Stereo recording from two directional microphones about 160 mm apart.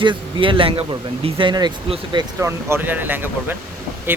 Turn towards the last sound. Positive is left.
turn(degrees=-15)  # may be behind; listen again after turning